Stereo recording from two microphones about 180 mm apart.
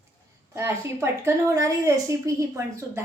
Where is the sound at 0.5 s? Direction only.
15° right (ahead or behind).